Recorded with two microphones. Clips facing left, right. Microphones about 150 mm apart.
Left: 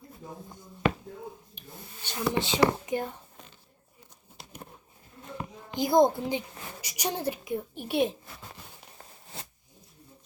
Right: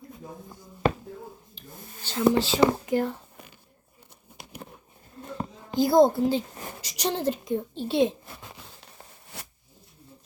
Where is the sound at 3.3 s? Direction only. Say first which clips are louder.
Right 3 dB; 10° right (ahead or behind).